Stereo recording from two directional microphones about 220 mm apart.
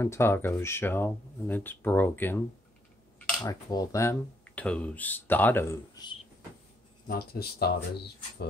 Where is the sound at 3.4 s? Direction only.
15° left (ahead or behind).